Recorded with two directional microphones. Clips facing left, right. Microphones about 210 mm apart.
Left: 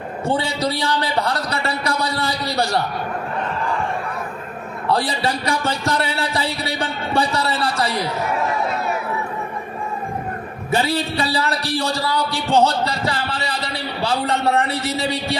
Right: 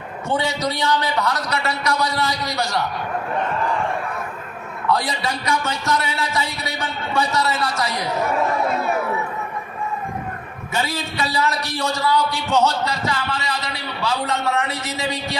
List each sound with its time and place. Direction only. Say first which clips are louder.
0.3 s a man's voice: left 1 dB; 30° left (ahead or behind)
4.9 s a man's voice: left 2 dB; 30° left (ahead or behind)
10.7 s a man's voice: left 5 dB; 35° left (ahead or behind)